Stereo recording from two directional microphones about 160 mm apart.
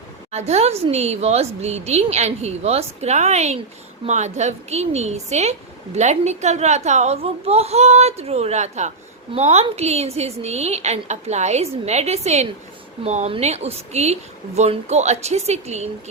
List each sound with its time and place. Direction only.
0.3 s a woman's voice: 45° right (ahead or behind)